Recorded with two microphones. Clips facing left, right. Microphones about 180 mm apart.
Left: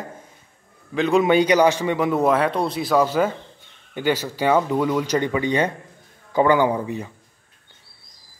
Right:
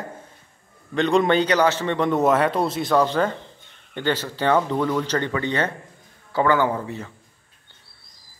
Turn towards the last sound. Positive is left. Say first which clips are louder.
# left 3 dB
turn(degrees=15)  # may be behind; listen again after turning